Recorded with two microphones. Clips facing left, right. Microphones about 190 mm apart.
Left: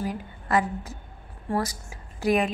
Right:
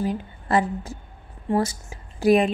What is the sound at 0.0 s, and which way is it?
A woman's voice, 30° right (ahead or behind).